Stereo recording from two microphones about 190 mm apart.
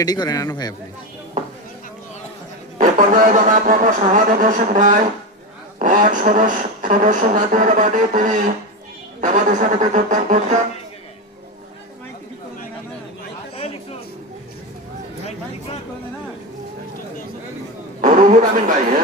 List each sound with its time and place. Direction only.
0.0 s a man's voice: 20° left (ahead or behind)
2.7 s speech: 45° right (ahead or behind)
18.0 s a man's voice: 45° right (ahead or behind)